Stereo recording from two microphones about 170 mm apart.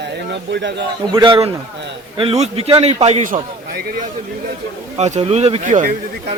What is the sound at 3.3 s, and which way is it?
Speech, 65° right (ahead or behind).